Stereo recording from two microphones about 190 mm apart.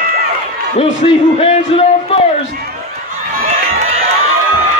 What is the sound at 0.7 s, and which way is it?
Music, 30° left (ahead or behind).